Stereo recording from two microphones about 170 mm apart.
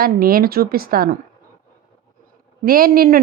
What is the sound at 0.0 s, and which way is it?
A woman's voice, 60° right (ahead or behind).